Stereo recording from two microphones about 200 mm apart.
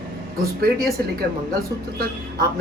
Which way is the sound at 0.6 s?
50° right (ahead or behind).